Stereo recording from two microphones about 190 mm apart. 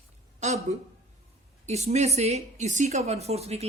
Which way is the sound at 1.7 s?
35° right (ahead or behind).